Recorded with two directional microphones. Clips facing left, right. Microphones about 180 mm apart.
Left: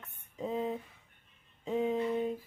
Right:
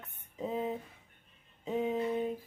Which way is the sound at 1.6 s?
5° right (ahead or behind).